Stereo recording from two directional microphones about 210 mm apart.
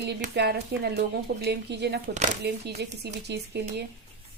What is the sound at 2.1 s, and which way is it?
Speech, 35° right (ahead or behind).